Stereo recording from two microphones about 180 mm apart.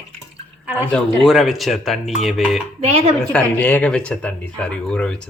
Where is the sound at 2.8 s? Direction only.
35° right (ahead or behind).